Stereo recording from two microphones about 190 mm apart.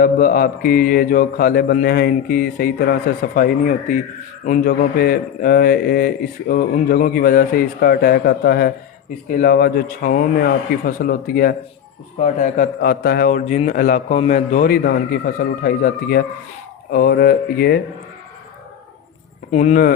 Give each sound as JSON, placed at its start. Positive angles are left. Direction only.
{"t": 0.0, "sound": "a man's voice", "side_deg": 50}
{"t": 19.5, "sound": "speech", "side_deg": 40}